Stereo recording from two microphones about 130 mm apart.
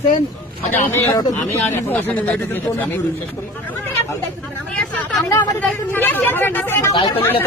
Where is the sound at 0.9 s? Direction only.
20° left (ahead or behind).